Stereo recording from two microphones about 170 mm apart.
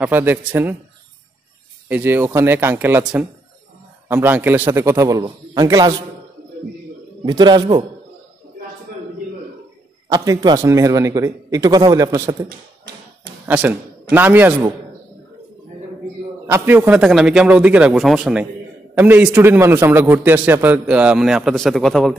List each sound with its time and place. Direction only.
0.0 s a man's voice: 10° right (ahead or behind)
1.9 s a man's voice: 10° right (ahead or behind)
4.1 s a man's voice: 10° right (ahead or behind)
7.2 s a man's voice: 25° right (ahead or behind)
10.0 s a man's voice: 20° right (ahead or behind)
12.4 s tap: 80° right
13.5 s a man's voice: 10° right (ahead or behind)
16.4 s a man's voice: 15° right (ahead or behind)